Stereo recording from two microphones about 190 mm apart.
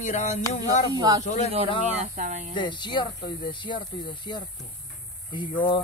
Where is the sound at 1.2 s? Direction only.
40° left (ahead or behind).